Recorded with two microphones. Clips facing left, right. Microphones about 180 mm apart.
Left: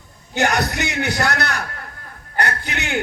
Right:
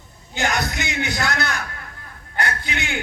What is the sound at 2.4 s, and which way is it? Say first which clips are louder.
Speech: even; 65° left (ahead or behind).